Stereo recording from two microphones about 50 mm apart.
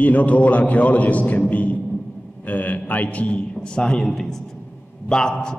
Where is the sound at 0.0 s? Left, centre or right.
Left.